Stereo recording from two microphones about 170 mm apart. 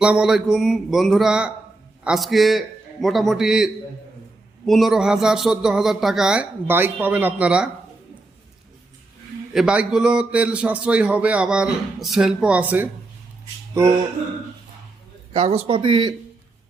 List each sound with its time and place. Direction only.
0.0 s speech: 5° right (ahead or behind)
9.5 s a man's voice: 5° right (ahead or behind)
15.3 s speech: 35° right (ahead or behind)